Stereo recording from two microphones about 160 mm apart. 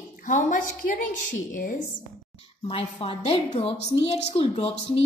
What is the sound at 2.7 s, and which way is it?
A woman's voice, 35° left (ahead or behind).